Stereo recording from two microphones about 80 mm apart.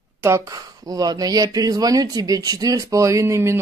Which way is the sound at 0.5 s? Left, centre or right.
Right.